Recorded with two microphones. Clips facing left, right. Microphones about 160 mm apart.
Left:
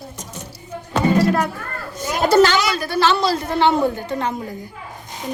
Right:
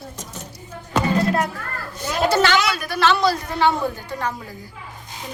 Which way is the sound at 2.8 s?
30° left (ahead or behind).